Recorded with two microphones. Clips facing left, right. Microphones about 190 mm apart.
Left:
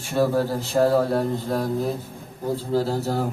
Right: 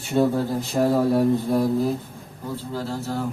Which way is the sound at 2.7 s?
35° left (ahead or behind).